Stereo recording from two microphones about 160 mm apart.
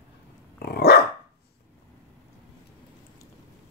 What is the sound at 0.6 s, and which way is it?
Dog, 85° left.